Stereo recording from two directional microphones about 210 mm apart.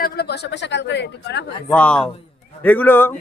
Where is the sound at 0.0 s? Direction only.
50° left (ahead or behind).